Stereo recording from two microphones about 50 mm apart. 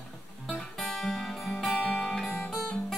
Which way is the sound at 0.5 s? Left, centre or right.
Centre.